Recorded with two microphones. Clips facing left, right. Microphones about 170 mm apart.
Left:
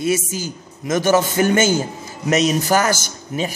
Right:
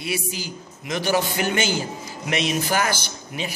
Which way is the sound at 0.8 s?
45° left (ahead or behind).